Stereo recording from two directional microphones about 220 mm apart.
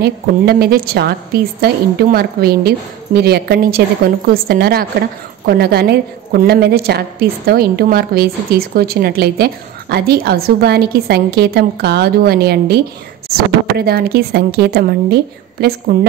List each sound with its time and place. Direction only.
0.0 s a woman's voice: 45° right (ahead or behind)
13.7 s a woman's voice: 45° right (ahead or behind)